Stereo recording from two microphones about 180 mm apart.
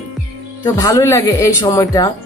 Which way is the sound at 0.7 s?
20° left (ahead or behind).